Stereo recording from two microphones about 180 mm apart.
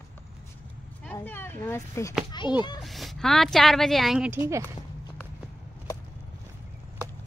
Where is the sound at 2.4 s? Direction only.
25° left (ahead or behind).